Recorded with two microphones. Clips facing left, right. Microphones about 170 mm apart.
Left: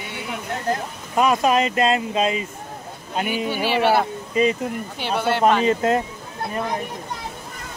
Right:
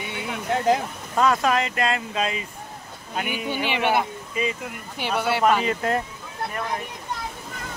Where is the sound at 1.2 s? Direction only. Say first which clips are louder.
Left 3 dB; 20° left (ahead or behind).